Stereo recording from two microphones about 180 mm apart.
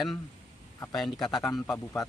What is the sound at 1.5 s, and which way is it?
Speech, 20° left (ahead or behind).